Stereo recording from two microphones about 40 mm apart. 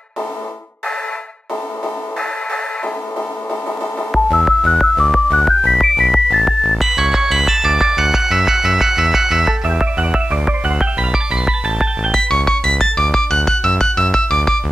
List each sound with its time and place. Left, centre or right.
4.1 s music: centre
12.1 s music: centre